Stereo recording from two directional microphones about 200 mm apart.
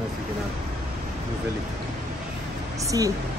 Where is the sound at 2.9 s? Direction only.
15° right (ahead or behind).